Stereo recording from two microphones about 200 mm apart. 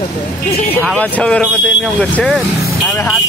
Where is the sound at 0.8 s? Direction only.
Centre (ahead or behind).